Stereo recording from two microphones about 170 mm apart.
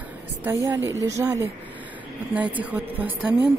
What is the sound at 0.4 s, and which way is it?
A woman's voice, 15° right (ahead or behind).